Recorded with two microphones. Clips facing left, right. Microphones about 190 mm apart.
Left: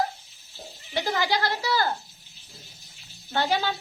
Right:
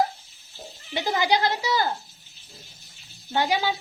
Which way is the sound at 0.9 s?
20° right (ahead or behind).